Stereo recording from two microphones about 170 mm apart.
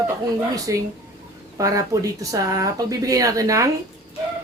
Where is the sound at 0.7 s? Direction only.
20° right (ahead or behind).